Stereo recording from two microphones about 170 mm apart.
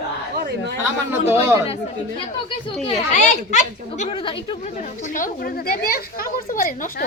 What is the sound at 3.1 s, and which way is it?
A woman's voice, 45° left (ahead or behind).